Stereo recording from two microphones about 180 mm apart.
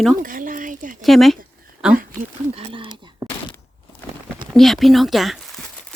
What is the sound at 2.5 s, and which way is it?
Speech, 30° right (ahead or behind).